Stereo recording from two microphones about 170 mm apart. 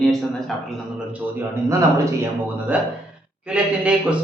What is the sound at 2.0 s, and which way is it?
A man's voice, 15° right (ahead or behind).